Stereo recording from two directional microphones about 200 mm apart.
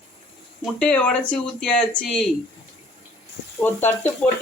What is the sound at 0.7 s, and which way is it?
Speech, 5° left (ahead or behind).